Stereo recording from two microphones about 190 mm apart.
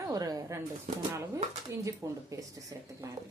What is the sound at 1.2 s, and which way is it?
Speech, 15° right (ahead or behind).